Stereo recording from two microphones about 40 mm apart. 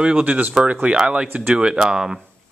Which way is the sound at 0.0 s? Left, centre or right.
Right.